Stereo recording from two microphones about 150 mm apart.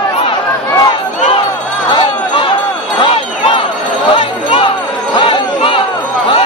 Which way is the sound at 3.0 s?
40° left (ahead or behind).